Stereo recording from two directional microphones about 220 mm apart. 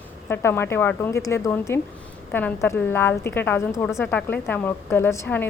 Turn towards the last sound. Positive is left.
turn(degrees=10)  # may be behind; listen again after turning